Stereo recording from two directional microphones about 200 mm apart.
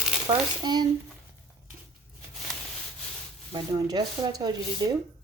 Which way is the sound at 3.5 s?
20° right (ahead or behind).